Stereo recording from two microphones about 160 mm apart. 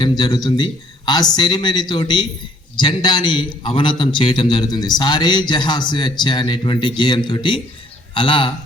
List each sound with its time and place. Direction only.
0.0 s a man's voice: 25° left (ahead or behind)